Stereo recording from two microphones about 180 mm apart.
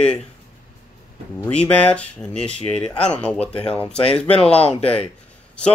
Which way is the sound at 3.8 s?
30° left (ahead or behind).